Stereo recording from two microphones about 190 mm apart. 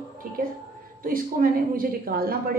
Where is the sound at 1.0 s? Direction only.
50° right (ahead or behind).